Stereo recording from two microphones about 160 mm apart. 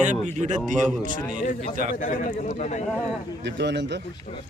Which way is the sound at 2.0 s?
50° left (ahead or behind).